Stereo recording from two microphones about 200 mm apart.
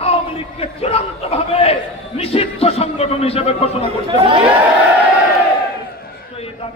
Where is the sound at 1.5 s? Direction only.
30° left (ahead or behind).